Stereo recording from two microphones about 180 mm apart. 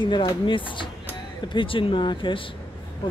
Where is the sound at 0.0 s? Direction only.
25° left (ahead or behind).